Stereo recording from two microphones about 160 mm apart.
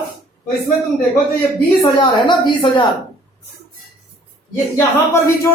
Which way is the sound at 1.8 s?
30° left (ahead or behind).